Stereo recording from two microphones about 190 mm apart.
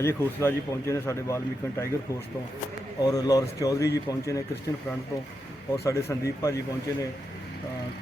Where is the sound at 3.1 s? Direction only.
20° left (ahead or behind).